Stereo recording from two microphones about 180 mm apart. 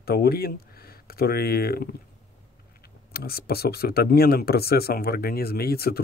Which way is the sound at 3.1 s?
60° left (ahead or behind).